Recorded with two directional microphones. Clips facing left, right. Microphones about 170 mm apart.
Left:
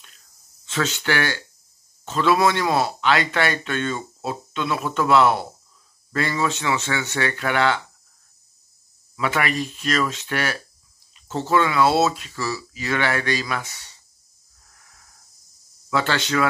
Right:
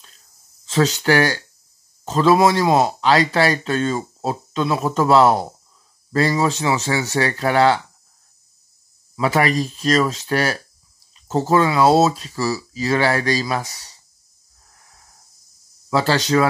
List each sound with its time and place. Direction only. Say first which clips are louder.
0.7 s speech: right 7 dB; 35° right (ahead or behind)
9.1 s speech: right 5 dB; 35° right (ahead or behind)
14.7 s wheeze: right 3 dB; 35° right (ahead or behind)
15.9 s speech: right 5 dB; 35° right (ahead or behind)